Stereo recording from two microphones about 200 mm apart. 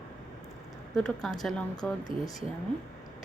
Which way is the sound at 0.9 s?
Centre (ahead or behind).